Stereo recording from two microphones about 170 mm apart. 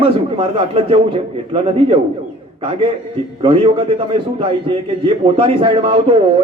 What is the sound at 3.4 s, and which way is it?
A man's voice, 30° right (ahead or behind).